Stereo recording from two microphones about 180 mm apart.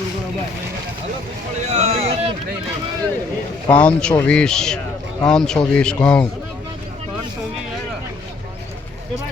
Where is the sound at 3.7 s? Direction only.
5° left (ahead or behind).